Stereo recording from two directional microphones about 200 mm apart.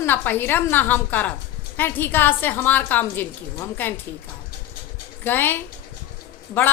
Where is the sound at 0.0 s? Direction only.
10° left (ahead or behind).